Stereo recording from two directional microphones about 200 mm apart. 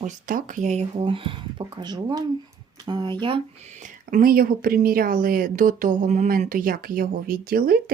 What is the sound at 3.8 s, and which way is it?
A woman's voice, 45° right (ahead or behind).